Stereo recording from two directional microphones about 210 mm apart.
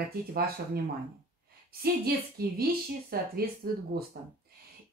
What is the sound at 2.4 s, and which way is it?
A woman's voice, 45° right (ahead or behind).